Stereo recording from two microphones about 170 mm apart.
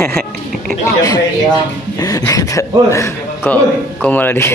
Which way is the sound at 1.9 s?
20° left (ahead or behind).